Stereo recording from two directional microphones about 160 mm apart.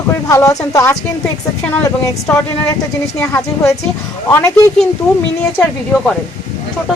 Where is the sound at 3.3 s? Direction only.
20° left (ahead or behind).